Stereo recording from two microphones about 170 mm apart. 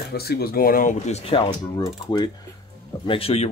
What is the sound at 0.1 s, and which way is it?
Speech, 65° left (ahead or behind).